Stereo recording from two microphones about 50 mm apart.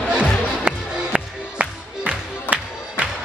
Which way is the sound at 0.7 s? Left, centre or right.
Right.